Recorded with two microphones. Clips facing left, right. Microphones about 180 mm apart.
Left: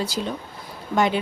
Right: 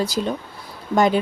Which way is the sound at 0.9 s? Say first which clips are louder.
Right 4 dB; 40° right (ahead or behind).